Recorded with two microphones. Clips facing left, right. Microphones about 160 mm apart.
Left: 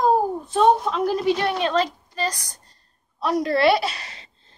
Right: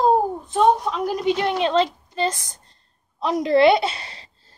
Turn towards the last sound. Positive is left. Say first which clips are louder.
# right 2 dB
turn(degrees=-30)  # may be behind; listen again after turning